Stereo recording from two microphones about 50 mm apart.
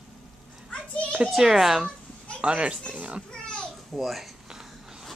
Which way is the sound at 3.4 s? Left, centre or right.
Centre.